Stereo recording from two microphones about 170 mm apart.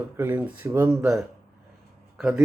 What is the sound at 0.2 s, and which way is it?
Speech, 10° right (ahead or behind).